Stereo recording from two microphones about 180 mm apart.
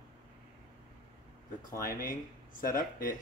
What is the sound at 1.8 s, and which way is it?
Speech, 50° left (ahead or behind).